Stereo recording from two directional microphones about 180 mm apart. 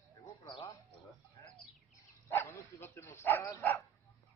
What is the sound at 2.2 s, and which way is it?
Bow-wow, 15° left (ahead or behind).